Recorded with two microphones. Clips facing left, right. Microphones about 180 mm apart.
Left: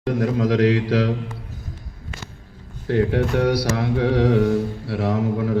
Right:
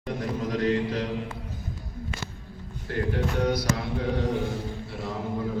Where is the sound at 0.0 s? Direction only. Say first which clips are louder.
Left 9 dB; 75° left (ahead or behind).